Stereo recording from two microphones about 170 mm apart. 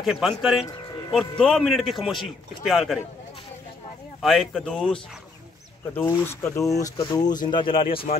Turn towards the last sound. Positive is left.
turn(degrees=30)  # may be behind; listen again after turning